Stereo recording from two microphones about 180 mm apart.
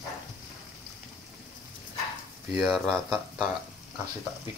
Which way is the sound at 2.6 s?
Centre (ahead or behind).